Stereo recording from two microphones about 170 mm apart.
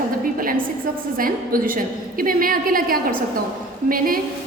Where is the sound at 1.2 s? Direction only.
55° right (ahead or behind).